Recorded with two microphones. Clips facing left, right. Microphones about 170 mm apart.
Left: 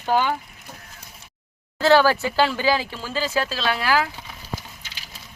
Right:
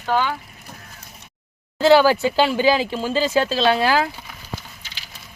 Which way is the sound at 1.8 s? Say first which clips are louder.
Right 3 dB; 15° right (ahead or behind).